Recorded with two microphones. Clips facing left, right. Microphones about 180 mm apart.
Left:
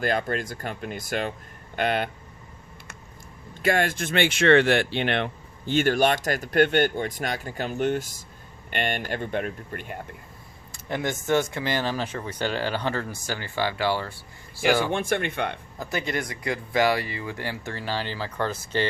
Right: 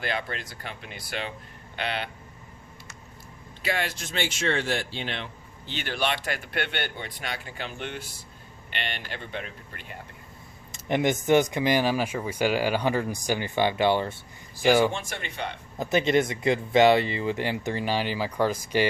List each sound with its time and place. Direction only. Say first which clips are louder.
0.0 s speech: left 6 dB; 45° left (ahead or behind)
3.6 s speech: left 6 dB; 50° left (ahead or behind)
10.7 s speech: right 4 dB; 20° right (ahead or behind)
14.9 s speech: left 9 dB; 55° left (ahead or behind)
15.8 s speech: right 7 dB; 20° right (ahead or behind)